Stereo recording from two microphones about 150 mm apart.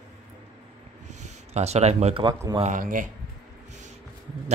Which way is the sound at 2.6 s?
60° right (ahead or behind).